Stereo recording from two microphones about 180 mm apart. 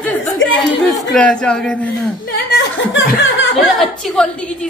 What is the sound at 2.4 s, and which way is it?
Speech, 80° left.